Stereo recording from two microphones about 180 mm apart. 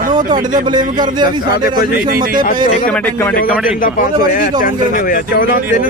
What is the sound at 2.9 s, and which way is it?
Speech, 10° left (ahead or behind).